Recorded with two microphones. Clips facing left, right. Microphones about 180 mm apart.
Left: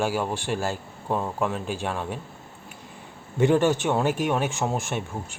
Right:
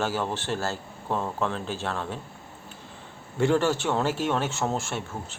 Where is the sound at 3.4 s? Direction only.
15° left (ahead or behind).